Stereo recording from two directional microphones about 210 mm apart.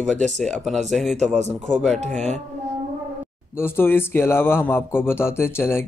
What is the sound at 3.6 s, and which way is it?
A man's voice, 10° left (ahead or behind).